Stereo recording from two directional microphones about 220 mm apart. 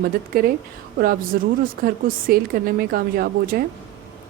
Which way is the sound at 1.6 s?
40° right (ahead or behind).